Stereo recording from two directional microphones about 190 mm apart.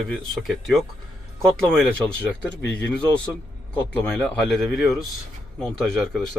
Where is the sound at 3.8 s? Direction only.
5° left (ahead or behind).